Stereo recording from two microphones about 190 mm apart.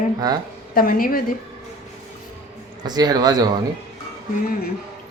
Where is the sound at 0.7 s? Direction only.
50° left (ahead or behind).